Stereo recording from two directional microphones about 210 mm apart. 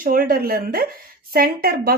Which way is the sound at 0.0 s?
45° right (ahead or behind).